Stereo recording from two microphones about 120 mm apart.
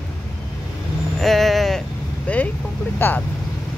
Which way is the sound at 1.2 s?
Centre (ahead or behind).